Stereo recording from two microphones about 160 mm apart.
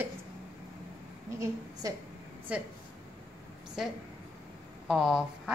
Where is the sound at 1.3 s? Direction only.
20° right (ahead or behind).